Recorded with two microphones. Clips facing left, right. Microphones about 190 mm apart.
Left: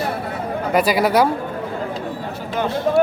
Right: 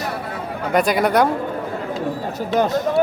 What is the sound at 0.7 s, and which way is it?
Speech, 5° left (ahead or behind).